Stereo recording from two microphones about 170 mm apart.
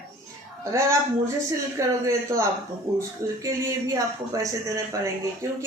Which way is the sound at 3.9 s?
20° right (ahead or behind).